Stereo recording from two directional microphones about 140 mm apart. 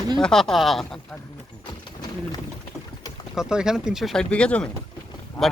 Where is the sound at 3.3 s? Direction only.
5° right (ahead or behind).